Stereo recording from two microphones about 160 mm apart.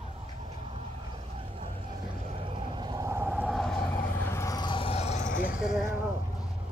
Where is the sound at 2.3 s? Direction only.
35° right (ahead or behind).